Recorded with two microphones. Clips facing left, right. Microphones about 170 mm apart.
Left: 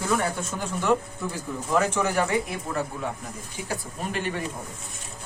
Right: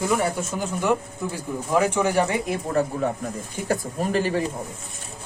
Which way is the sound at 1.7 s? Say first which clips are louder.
Right 3 dB; 10° right (ahead or behind).